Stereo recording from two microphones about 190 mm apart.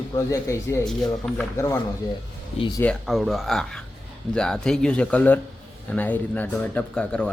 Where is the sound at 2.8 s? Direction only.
5° left (ahead or behind).